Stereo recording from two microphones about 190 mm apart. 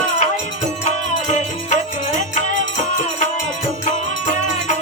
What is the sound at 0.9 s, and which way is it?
Music, 40° left (ahead or behind).